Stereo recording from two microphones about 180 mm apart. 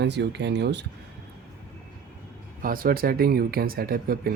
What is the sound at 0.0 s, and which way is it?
Speech, 75° right (ahead or behind).